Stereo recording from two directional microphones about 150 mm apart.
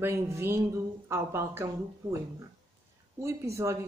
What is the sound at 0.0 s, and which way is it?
Speech, 20° right (ahead or behind).